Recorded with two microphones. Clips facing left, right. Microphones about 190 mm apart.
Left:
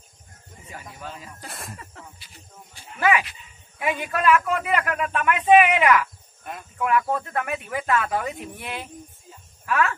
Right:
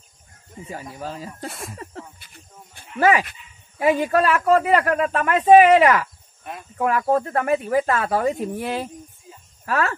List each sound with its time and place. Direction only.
0.7 s speech: 35° right (ahead or behind)
1.5 s a sound: centre (ahead or behind)
2.1 s snake: 55° right (ahead or behind)
3.0 s speech: 40° right (ahead or behind)